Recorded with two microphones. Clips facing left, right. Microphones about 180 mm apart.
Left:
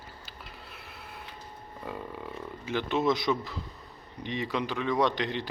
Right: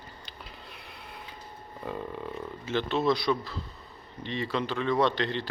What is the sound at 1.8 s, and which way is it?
Burping, 5° left (ahead or behind).